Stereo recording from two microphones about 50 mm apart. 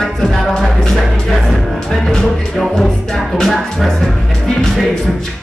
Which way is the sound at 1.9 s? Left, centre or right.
Centre.